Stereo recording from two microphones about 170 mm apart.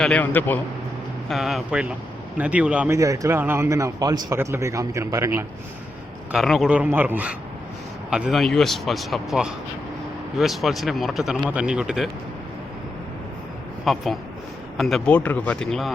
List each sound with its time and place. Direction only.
0.0 s a man's voice: 10° left (ahead or behind)
1.3 s a man's voice: centre (ahead or behind); by 5.5 s 15° right (ahead or behind)
6.3 s a man's voice: centre (ahead or behind)
13.8 s a man's voice: centre (ahead or behind)